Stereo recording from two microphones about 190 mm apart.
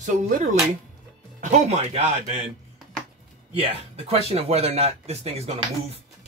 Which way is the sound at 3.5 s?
30° right (ahead or behind).